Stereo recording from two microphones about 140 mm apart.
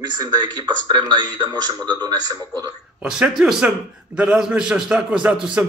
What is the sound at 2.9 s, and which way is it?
A man's voice, 5° right (ahead or behind).